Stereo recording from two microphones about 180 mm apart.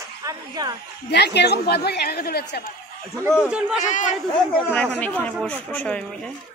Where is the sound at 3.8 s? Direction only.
45° left (ahead or behind).